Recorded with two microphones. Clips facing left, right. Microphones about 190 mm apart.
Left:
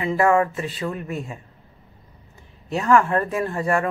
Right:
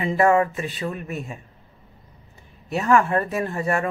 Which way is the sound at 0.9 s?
25° left (ahead or behind).